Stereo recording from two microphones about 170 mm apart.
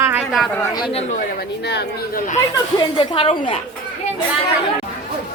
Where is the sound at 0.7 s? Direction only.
30° left (ahead or behind).